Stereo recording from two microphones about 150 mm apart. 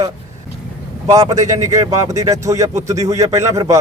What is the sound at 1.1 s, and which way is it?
Speech, 25° right (ahead or behind).